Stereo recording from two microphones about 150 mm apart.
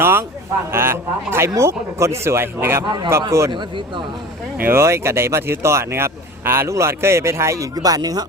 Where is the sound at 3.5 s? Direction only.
30° right (ahead or behind).